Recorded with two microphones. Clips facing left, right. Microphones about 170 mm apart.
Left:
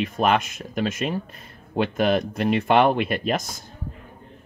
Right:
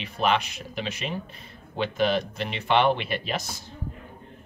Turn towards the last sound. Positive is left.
turn(degrees=50)  # may be behind; listen again after turning